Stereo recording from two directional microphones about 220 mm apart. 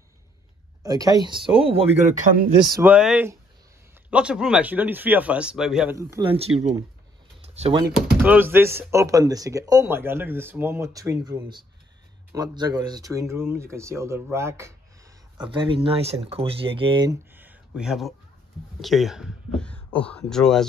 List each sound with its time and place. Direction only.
0.8 s speech: 15° right (ahead or behind)
6.1 s speech: 25° right (ahead or behind)
7.4 s a sound: 30° right (ahead or behind)
7.9 s speech: 5° right (ahead or behind)